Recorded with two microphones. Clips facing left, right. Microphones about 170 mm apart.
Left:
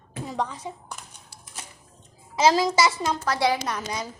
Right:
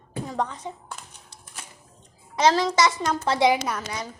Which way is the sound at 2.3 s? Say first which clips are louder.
Even; 10° left (ahead or behind).